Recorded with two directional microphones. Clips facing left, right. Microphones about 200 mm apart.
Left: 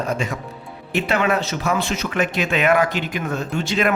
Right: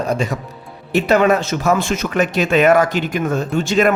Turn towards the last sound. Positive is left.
turn(degrees=-45)  # may be behind; listen again after turning